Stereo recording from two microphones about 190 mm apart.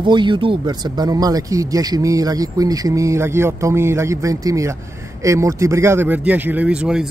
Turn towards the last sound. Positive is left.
turn(degrees=-5)  # may be behind; listen again after turning